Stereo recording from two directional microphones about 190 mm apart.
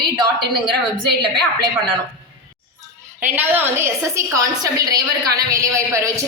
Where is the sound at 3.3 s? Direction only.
10° right (ahead or behind).